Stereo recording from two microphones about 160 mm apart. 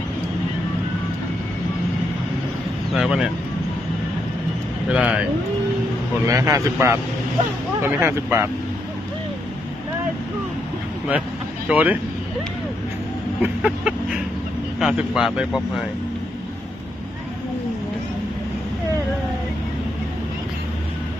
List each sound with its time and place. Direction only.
2.9 s speech: 5° right (ahead or behind)
4.9 s speech: 5° right (ahead or behind)
6.2 s a man's voice: 20° right (ahead or behind)
11.7 s a man's voice: 10° right (ahead or behind)
13.4 s a sound: 5° right (ahead or behind)
14.8 s speech: 5° right (ahead or behind)